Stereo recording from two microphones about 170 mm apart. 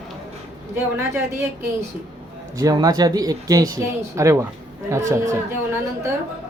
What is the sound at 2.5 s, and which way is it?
Speech, 20° right (ahead or behind).